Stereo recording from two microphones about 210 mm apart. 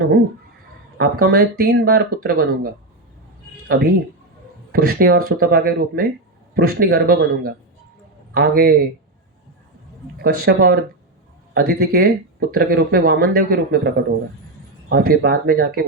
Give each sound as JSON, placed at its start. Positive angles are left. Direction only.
{"t": 0.9, "sound": "speech", "side_deg": -45}
{"t": 10.4, "sound": "speech", "side_deg": -50}